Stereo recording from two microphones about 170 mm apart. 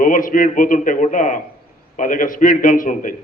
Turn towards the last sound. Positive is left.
turn(degrees=50)  # may be behind; listen again after turning